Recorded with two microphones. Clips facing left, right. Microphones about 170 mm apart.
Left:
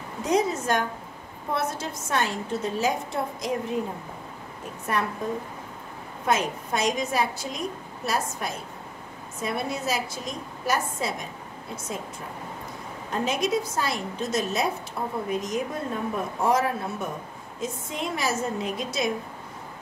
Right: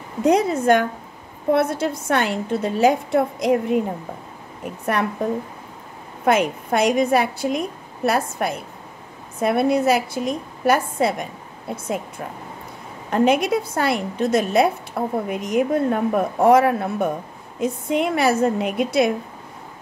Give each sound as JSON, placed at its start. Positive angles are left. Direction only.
{"t": 0.2, "sound": "a woman's voice", "side_deg": -60}
{"t": 4.8, "sound": "a woman's voice", "side_deg": -65}
{"t": 13.1, "sound": "a woman's voice", "side_deg": -60}